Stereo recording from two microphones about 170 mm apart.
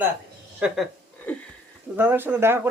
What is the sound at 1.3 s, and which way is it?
Wheeze, 5° left (ahead or behind).